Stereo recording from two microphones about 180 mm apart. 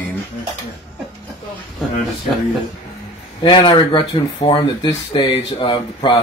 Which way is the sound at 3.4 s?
25° left (ahead or behind).